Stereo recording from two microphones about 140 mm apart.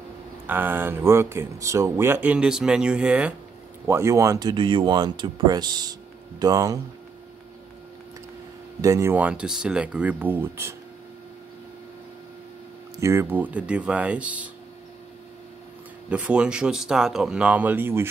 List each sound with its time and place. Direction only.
0.5 s speech: 15° right (ahead or behind)
3.8 s speech: 20° right (ahead or behind)
8.8 s speech: 25° right (ahead or behind)
9.1 s speech: 10° right (ahead or behind)
13.0 s speech: 20° right (ahead or behind)
16.1 s speech: 10° right (ahead or behind)